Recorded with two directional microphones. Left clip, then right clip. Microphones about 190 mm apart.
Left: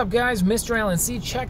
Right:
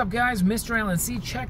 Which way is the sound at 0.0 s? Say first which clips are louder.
Left 2 dB; 40° right (ahead or behind).